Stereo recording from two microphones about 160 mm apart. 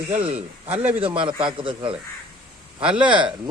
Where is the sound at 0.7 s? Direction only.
10° right (ahead or behind).